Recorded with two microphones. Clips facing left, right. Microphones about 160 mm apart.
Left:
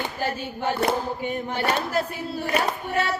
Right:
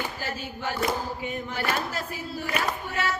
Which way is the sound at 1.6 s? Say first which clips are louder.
Left 4 dB; 30° left (ahead or behind).